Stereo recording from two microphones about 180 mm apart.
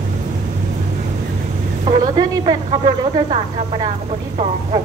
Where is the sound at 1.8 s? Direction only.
30° right (ahead or behind).